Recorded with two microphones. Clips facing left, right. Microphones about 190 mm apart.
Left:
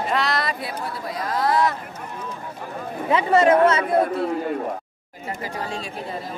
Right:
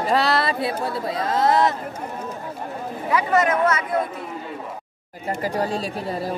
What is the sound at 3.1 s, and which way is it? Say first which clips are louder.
Speech: left 3 dB; 30° left (ahead or behind).